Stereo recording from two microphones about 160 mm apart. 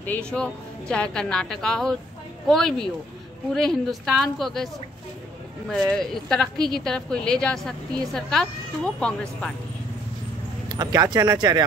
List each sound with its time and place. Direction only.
0.0 s a woman's voice: 10° left (ahead or behind)
5.7 s a woman's voice: 5° left (ahead or behind)
10.7 s speech: 25° right (ahead or behind)